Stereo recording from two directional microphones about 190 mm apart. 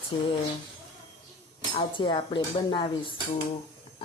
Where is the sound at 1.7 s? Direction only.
25° left (ahead or behind).